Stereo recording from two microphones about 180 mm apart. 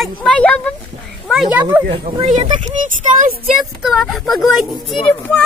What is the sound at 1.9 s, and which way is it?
Speech, 40° right (ahead or behind).